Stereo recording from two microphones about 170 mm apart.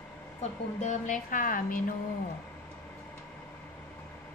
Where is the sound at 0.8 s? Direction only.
45° left (ahead or behind).